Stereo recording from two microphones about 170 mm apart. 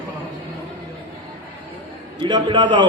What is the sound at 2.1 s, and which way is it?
Speech, 30° right (ahead or behind).